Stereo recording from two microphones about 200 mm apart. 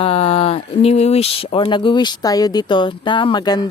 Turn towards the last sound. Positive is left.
turn(degrees=20)  # may be behind; listen again after turning